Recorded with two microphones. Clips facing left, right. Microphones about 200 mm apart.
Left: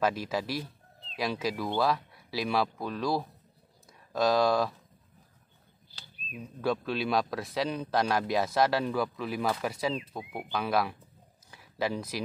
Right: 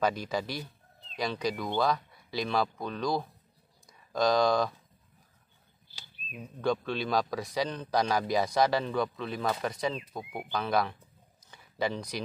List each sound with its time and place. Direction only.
0.0 s speech: 5° left (ahead or behind)
6.6 s speech: 5° left (ahead or behind)
11.5 s a sound: 5° left (ahead or behind)